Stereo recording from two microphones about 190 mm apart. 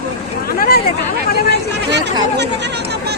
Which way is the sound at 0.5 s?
50° left (ahead or behind).